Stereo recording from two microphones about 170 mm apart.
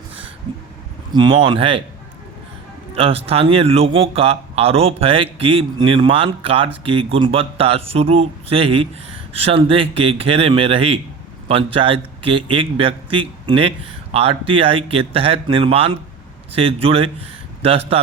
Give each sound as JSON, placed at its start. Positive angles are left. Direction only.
{"t": 1.1, "sound": "speech", "side_deg": -30}
{"t": 2.9, "sound": "speech", "side_deg": -35}